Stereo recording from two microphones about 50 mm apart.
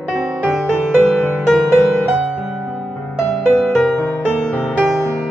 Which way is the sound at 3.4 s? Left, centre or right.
Centre.